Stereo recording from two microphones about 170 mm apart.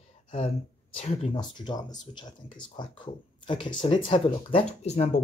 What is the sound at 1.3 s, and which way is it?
Speech, 25° left (ahead or behind).